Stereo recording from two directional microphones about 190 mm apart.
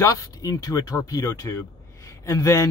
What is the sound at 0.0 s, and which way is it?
Speech, 15° left (ahead or behind).